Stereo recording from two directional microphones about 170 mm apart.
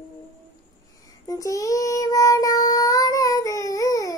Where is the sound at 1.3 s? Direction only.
20° left (ahead or behind).